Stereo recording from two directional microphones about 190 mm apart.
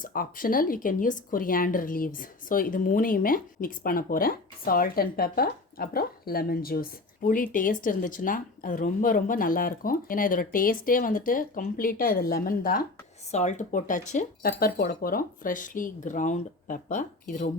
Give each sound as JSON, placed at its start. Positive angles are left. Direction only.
{"t": 0.0, "sound": "speech", "side_deg": 50}
{"t": 13.3, "sound": "speech", "side_deg": 40}